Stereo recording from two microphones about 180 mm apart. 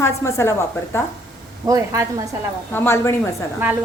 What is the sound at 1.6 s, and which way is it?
Speech, 20° right (ahead or behind).